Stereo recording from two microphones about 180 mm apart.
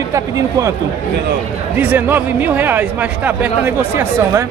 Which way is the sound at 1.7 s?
10° right (ahead or behind).